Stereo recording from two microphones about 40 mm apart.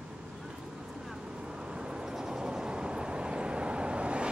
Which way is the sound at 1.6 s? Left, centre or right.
Centre.